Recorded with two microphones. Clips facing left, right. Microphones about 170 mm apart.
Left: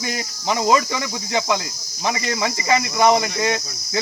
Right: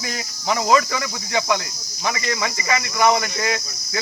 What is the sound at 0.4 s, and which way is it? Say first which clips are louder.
Speech: even; 25° left (ahead or behind).